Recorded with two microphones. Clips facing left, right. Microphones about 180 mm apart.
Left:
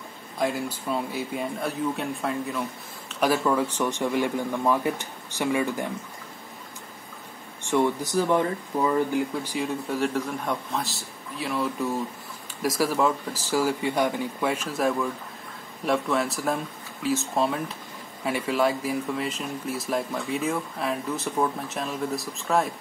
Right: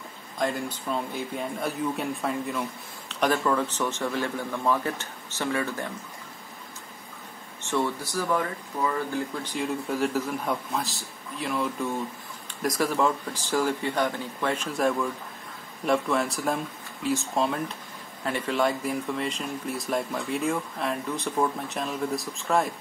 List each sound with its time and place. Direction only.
0.4 s a man's voice: 5° left (ahead or behind)
7.6 s a man's voice: 15° left (ahead or behind)